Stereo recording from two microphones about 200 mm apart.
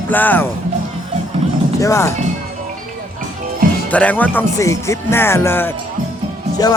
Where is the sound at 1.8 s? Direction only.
15° left (ahead or behind).